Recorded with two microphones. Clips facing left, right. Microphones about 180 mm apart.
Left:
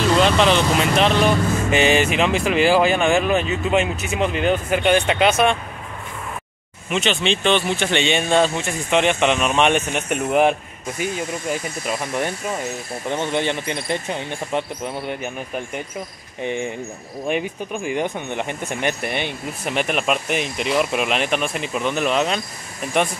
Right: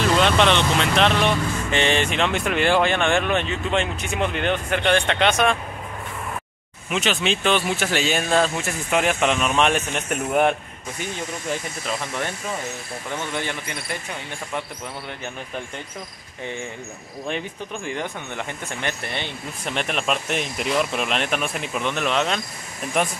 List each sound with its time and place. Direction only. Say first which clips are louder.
0.2 s speech: left 2 dB; centre (ahead or behind)
6.9 s speech: left 2 dB; centre (ahead or behind)
13.1 s speech: left 6 dB; 20° left (ahead or behind)
17.3 s speech: left 6 dB; 15° left (ahead or behind)